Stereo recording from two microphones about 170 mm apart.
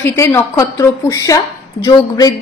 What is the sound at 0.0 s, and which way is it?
A woman's voice, 15° left (ahead or behind).